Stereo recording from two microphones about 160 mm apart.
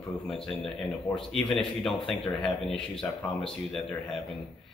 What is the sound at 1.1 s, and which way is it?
Speech, centre (ahead or behind).